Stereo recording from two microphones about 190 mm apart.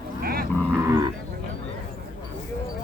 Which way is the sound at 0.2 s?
50° right (ahead or behind).